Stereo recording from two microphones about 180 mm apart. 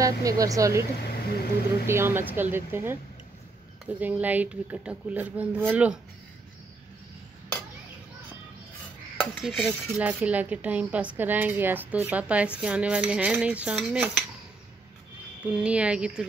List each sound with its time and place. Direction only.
0.0 s speech: 20° right (ahead or behind)
1.0 s speech: 60° left (ahead or behind)
1.9 s dishes: 15° right (ahead or behind)
9.2 s dishes: 10° left (ahead or behind); by 12.4 s 5° right (ahead or behind)
12.5 s cutlery: 5° right (ahead or behind)
15.4 s cutlery: 5° right (ahead or behind)